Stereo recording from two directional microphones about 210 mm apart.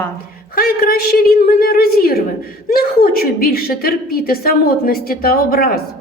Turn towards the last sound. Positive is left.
turn(degrees=45)  # may be behind; listen again after turning